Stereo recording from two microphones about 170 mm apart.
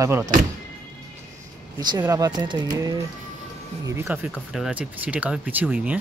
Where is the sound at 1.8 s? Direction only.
25° right (ahead or behind).